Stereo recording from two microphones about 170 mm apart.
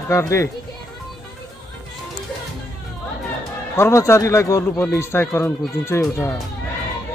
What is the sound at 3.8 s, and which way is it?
Speech, 15° left (ahead or behind).